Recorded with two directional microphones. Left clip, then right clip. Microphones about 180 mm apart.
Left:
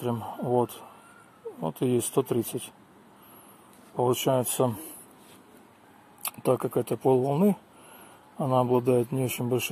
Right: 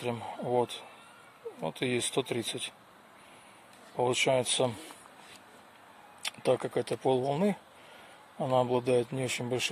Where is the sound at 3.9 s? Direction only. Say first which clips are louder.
Left 2 dB; 10° left (ahead or behind).